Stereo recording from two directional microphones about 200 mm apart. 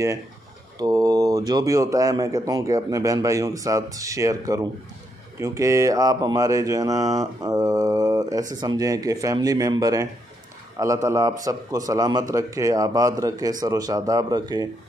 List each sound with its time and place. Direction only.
0.7 s mantra: 20° right (ahead or behind)
11.1 s mantra: 15° right (ahead or behind)